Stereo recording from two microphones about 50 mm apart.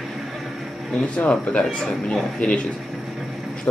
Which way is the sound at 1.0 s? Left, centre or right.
Left.